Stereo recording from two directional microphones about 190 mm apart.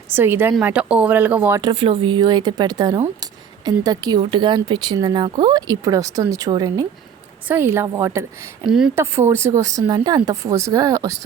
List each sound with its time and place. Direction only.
0.1 s speech: 10° right (ahead or behind)
7.4 s speech: 10° right (ahead or behind)
8.6 s speech: 5° right (ahead or behind)
9.0 s speech: 15° right (ahead or behind)